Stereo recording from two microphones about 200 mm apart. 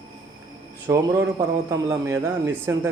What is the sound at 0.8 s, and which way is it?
A man's voice, 10° right (ahead or behind).